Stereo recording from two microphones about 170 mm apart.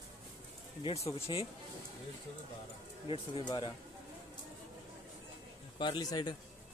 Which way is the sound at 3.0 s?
30° left (ahead or behind).